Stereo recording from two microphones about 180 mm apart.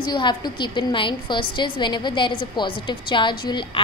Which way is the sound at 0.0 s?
25° left (ahead or behind).